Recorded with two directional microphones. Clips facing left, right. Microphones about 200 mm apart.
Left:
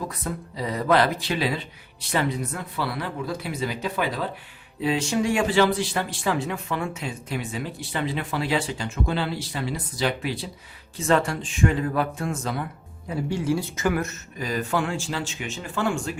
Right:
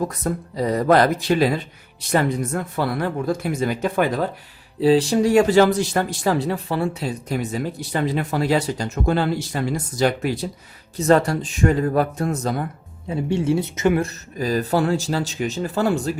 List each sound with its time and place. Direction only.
0.0 s speech: 45° right (ahead or behind)
4.8 s speech: 35° right (ahead or behind)
13.1 s speech: 25° right (ahead or behind)